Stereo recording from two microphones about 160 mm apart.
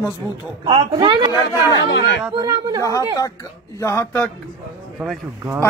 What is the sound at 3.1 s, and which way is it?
Speech, 20° left (ahead or behind).